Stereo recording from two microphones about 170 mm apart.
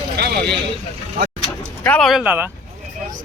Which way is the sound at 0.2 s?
75° right (ahead or behind).